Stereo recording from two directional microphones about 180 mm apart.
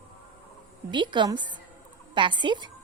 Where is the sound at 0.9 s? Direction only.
25° right (ahead or behind).